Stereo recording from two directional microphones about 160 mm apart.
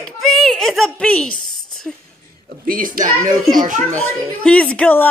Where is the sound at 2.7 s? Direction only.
60° right (ahead or behind).